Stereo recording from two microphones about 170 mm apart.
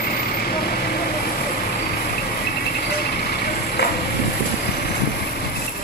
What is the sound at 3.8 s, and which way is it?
Vehicle, 80° left.